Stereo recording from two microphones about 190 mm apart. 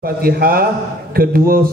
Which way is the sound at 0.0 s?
50° right (ahead or behind).